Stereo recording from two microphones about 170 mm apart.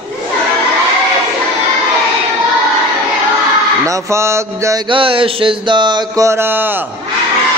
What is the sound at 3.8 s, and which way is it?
Mantra, 20° right (ahead or behind).